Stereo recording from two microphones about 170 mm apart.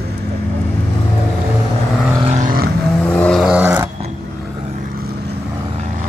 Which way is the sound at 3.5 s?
10° right (ahead or behind).